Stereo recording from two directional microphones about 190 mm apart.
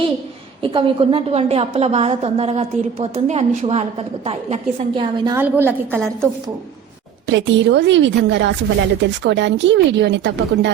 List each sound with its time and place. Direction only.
0.6 s a woman's voice: 25° right (ahead or behind)
5.2 s a woman's voice: 15° right (ahead or behind)
7.3 s speech: 70° right (ahead or behind)